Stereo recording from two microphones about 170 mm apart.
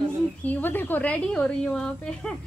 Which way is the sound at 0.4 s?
10° left (ahead or behind).